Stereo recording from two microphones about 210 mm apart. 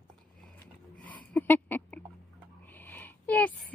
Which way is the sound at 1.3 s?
10° left (ahead or behind).